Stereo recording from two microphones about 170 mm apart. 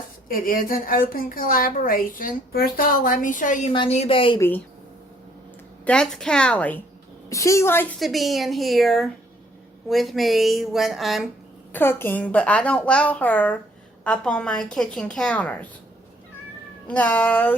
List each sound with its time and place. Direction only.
0.3 s a woman's voice: 55° left (ahead or behind)
3.7 s a woman's voice: 35° left (ahead or behind)
4.4 s a woman's voice: 10° left (ahead or behind)
5.8 s a woman's voice: 5° left (ahead or behind)
7.3 s a woman's voice: 20° left (ahead or behind)
7.9 s a woman's voice: centre (ahead or behind)
11.7 s a woman's voice: 15° left (ahead or behind)
16.8 s a woman's voice: 10° left (ahead or behind)